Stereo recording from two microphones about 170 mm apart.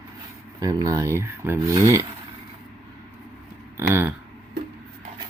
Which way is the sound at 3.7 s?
15° right (ahead or behind).